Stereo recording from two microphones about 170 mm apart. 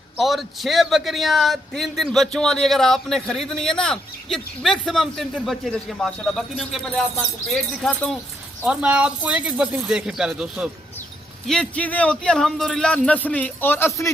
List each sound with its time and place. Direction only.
0.2 s a man's voice: centre (ahead or behind); by 14.1 s 15° left (ahead or behind)